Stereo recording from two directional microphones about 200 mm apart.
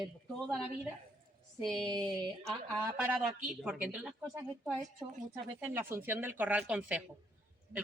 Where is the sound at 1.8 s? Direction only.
20° right (ahead or behind).